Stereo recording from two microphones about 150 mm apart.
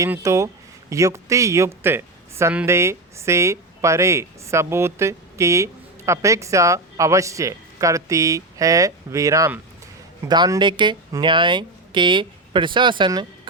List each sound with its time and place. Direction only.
0.0 s speech: 20° right (ahead or behind)